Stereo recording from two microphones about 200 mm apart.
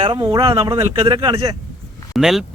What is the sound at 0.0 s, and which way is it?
Speech, 25° right (ahead or behind).